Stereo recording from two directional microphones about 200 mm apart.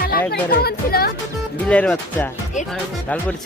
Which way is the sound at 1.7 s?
5° left (ahead or behind).